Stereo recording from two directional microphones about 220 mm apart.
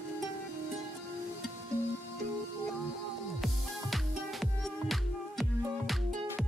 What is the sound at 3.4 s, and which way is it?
Music, centre (ahead or behind).